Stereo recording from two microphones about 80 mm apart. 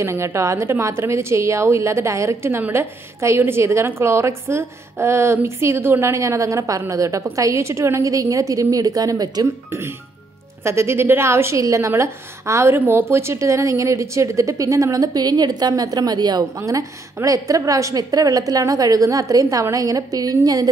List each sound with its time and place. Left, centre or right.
0.0 s a woman's voice: right
9.7 s a woman's voice: right
16.5 s a woman's voice: right